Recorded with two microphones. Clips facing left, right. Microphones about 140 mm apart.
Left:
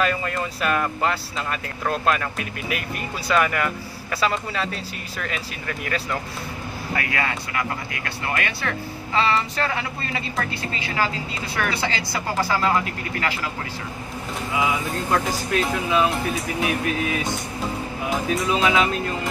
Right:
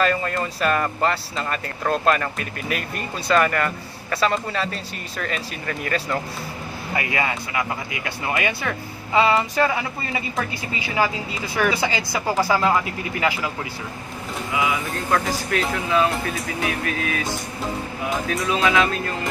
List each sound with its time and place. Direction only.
0.0 s speech: 5° left (ahead or behind)
7.0 s speech: 15° right (ahead or behind)
11.5 s speech: 10° right (ahead or behind)
14.5 s speech: 25° left (ahead or behind)
18.3 s speech: 20° left (ahead or behind)